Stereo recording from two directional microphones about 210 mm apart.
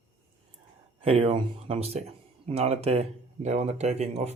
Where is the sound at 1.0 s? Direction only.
25° right (ahead or behind).